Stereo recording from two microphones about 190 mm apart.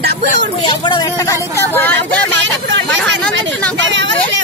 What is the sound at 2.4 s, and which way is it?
Speech, 75° right (ahead or behind).